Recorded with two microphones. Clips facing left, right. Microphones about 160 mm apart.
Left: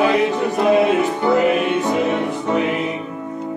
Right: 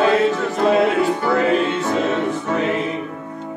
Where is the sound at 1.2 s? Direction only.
20° left (ahead or behind).